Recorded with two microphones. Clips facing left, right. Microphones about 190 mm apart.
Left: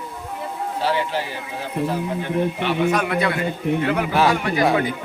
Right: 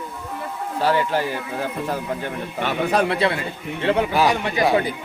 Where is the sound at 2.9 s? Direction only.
30° right (ahead or behind).